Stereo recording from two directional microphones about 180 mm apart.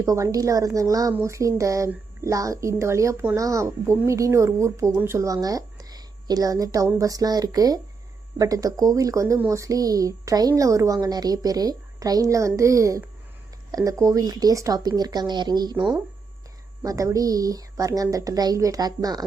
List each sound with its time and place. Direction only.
0.0 s a woman's voice: 20° right (ahead or behind)